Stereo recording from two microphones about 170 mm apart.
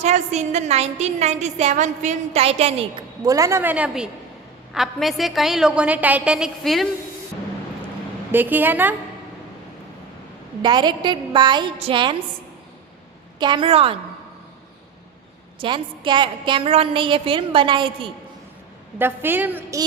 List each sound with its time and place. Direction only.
0.0 s a woman's voice: 40° right (ahead or behind)
3.2 s a woman's voice: 20° right (ahead or behind); by 6.8 s centre (ahead or behind)
8.3 s a woman's voice: 10° right (ahead or behind)
10.6 s a woman's voice: 25° right (ahead or behind)
13.4 s a woman's voice: 25° right (ahead or behind)
15.5 s a woman's voice: 30° right (ahead or behind)
18.9 s a woman's voice: 10° right (ahead or behind)